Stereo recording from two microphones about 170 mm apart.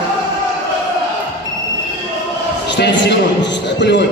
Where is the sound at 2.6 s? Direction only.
90° left.